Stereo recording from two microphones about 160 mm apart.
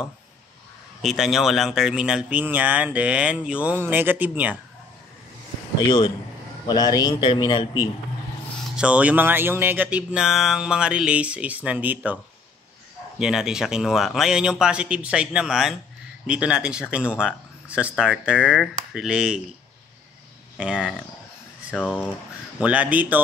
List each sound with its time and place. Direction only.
1.0 s speech: centre (ahead or behind)
5.9 s a man's voice: 30° left (ahead or behind)
8.7 s speech: 5° right (ahead or behind)
13.2 s speech: 5° right (ahead or behind)
20.5 s speech: 5° right (ahead or behind)
21.7 s speech: 10° left (ahead or behind)
22.6 s speech: 10° right (ahead or behind)